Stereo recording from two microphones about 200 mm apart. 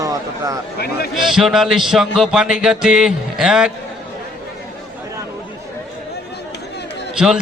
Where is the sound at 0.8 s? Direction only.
50° left (ahead or behind).